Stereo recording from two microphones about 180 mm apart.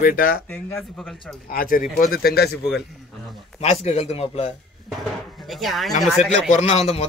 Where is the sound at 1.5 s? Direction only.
50° left (ahead or behind).